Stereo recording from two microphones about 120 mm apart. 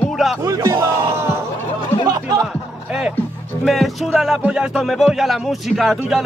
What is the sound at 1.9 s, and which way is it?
Speech, 20° left (ahead or behind).